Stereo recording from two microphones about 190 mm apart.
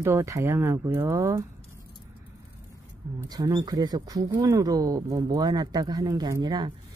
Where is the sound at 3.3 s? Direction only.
20° right (ahead or behind).